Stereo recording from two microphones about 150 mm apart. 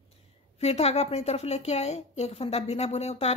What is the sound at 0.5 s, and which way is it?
A woman's voice, 45° left (ahead or behind).